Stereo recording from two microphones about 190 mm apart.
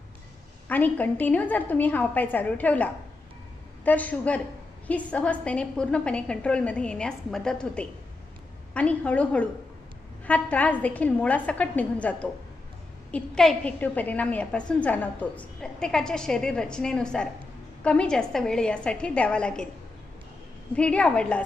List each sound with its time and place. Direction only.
0.7 s a woman's voice: 10° left (ahead or behind)
20.7 s a woman's voice: 5° left (ahead or behind)